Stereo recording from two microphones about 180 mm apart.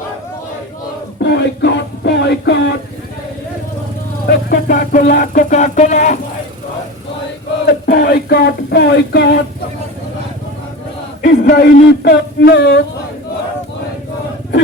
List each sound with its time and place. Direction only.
1.2 s music: 75° left (ahead or behind)
4.3 s music: 55° left (ahead or behind)
7.7 s speech: 60° left (ahead or behind)
11.2 s speech: 65° left (ahead or behind)